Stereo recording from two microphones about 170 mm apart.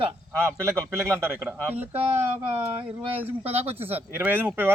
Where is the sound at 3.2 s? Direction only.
35° right (ahead or behind).